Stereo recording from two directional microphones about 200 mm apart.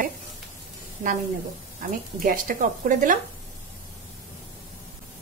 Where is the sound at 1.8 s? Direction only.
40° right (ahead or behind).